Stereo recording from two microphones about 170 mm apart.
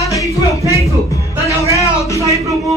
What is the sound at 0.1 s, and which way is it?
Music, 20° left (ahead or behind).